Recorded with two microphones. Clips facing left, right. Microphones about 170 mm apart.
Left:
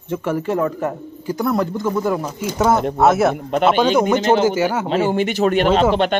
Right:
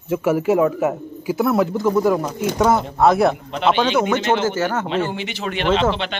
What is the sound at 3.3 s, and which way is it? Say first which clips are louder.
Speech: left 3 dB; 50° left (ahead or behind).